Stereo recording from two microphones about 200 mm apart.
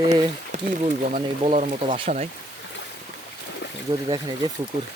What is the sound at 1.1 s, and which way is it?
Speech, 35° right (ahead or behind).